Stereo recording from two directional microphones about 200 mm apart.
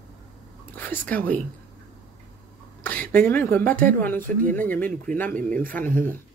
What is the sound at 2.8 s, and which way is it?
A woman's voice, 10° left (ahead or behind).